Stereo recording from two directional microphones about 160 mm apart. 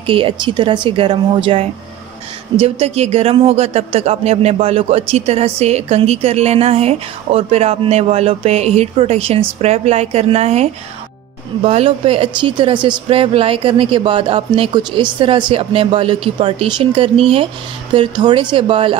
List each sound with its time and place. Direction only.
0.0 s a man's voice: 35° right (ahead or behind)